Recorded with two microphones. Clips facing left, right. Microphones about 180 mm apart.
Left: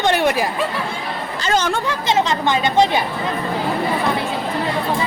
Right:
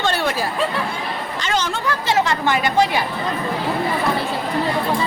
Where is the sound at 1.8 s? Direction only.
20° left (ahead or behind).